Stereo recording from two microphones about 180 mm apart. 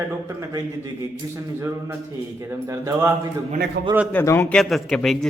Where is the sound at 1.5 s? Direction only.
15° right (ahead or behind).